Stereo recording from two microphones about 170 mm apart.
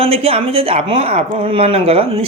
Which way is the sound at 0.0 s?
35° right (ahead or behind).